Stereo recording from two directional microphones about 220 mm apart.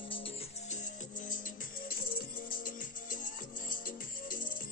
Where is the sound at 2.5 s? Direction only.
40° left (ahead or behind).